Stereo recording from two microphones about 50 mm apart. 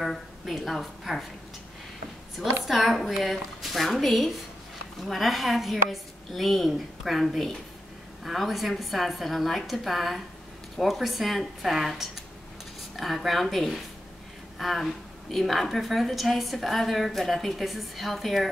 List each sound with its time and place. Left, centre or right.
0.5 s a woman's voice: centre
2.6 s a woman's voice: centre